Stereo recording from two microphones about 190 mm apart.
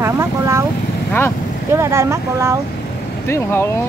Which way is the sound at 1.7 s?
15° right (ahead or behind).